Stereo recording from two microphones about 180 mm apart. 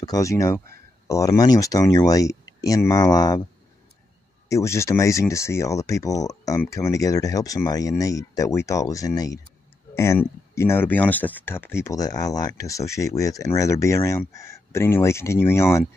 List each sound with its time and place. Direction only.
0.0 s speech: 20° left (ahead or behind)
4.5 s speech: 15° left (ahead or behind)